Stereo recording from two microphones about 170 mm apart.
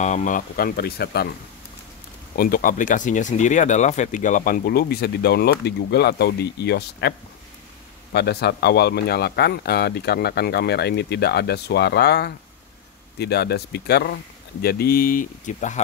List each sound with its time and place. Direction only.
0.0 s speech: 45° left (ahead or behind); by 1.3 s 70° left (ahead or behind)
2.3 s speech: 60° left (ahead or behind)